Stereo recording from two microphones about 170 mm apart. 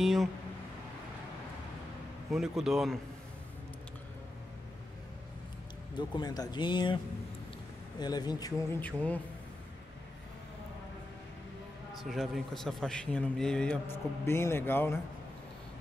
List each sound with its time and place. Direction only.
0.0 s a sound: centre (ahead or behind)
2.3 s a man's voice: centre (ahead or behind)
5.9 s speech: 25° left (ahead or behind)
8.0 s speech: 25° left (ahead or behind)
8.8 s speech: 10° left (ahead or behind)
12.1 s a man's voice: centre (ahead or behind)